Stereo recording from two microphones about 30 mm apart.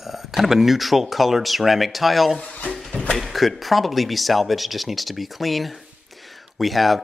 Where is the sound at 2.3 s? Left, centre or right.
Left.